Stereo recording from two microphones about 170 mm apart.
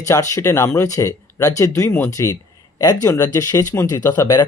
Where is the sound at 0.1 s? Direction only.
15° left (ahead or behind).